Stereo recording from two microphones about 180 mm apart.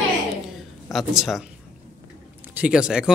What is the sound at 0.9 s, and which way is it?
Speech, centre (ahead or behind).